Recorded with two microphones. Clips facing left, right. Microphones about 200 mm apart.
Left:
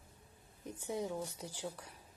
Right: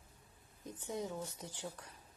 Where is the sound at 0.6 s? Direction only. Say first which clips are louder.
Left 2 dB; 10° left (ahead or behind).